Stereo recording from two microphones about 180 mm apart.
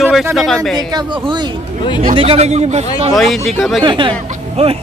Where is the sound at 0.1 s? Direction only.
Centre (ahead or behind).